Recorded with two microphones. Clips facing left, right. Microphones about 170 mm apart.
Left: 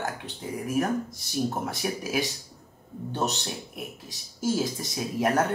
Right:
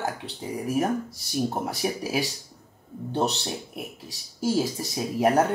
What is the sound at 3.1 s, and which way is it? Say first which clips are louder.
Speech: right 3 dB; 30° right (ahead or behind).